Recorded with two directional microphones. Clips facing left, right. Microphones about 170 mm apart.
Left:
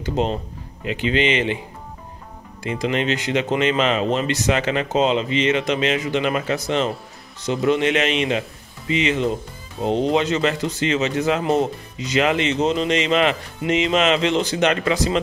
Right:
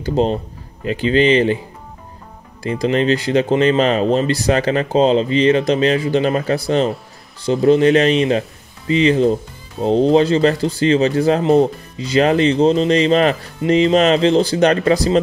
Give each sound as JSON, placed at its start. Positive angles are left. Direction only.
{"t": 0.0, "sound": "a man's voice", "side_deg": -35}
{"t": 2.6, "sound": "a man's voice", "side_deg": -35}